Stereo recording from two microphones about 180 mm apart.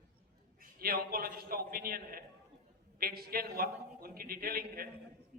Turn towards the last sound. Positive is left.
turn(degrees=-55)  # may be behind; listen again after turning